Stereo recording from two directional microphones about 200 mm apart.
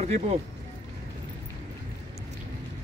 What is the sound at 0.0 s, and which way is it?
Speech, 35° right (ahead or behind).